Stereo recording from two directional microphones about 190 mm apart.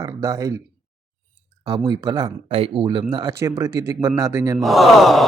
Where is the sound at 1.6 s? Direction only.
20° right (ahead or behind).